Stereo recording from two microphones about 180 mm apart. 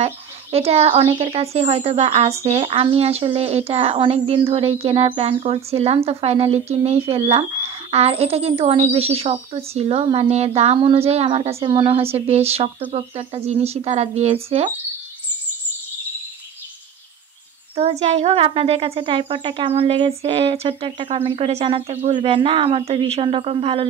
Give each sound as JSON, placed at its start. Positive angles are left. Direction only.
{"t": 0.0, "sound": "speech", "side_deg": -35}
{"t": 17.7, "sound": "speech", "side_deg": -40}